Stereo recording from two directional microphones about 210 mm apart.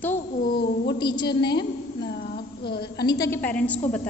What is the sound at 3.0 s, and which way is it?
Speech, 15° left (ahead or behind).